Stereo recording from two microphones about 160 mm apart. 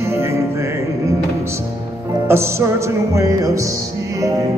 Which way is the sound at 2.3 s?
15° right (ahead or behind).